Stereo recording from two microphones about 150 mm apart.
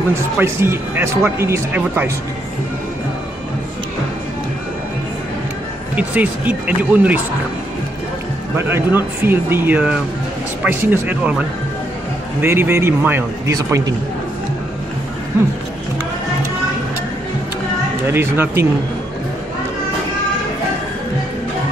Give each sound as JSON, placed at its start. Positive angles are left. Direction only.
{"t": 0.4, "sound": "speech", "side_deg": -15}
{"t": 5.9, "sound": "speech", "side_deg": -10}
{"t": 8.5, "sound": "speech", "side_deg": -15}
{"t": 18.0, "sound": "speech", "side_deg": -15}